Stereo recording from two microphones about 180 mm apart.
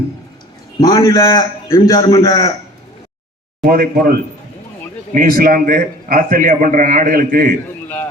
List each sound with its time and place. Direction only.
0.8 s a man's voice: 20° left (ahead or behind)
3.6 s a man's voice: 55° right (ahead or behind)